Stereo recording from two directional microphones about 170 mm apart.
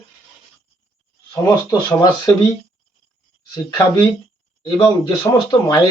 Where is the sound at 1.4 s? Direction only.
20° left (ahead or behind).